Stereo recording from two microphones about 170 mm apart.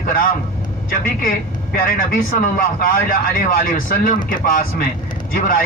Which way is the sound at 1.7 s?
55° left (ahead or behind).